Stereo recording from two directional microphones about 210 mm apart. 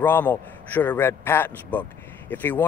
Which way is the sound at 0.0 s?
10° left (ahead or behind).